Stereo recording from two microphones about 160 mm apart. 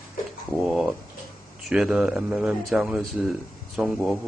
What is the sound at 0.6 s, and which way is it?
Speech, centre (ahead or behind).